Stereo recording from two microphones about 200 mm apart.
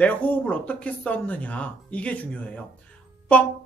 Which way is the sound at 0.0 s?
5° left (ahead or behind).